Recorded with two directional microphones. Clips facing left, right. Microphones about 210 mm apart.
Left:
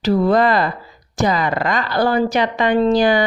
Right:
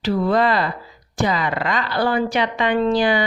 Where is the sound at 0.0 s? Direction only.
40° left (ahead or behind).